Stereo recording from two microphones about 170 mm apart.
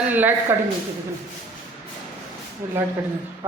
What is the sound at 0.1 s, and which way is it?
Speech, 10° right (ahead or behind).